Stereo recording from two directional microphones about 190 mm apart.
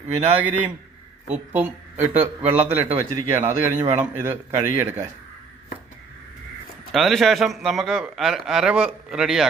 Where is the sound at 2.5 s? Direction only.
35° right (ahead or behind).